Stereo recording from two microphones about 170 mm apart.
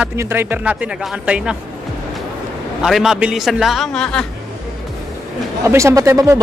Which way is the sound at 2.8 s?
Centre (ahead or behind).